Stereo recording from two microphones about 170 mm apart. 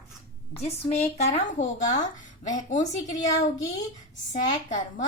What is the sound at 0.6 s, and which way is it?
A woman's voice, 40° left (ahead or behind).